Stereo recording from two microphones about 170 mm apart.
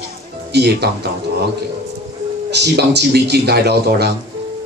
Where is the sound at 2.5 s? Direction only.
80° right.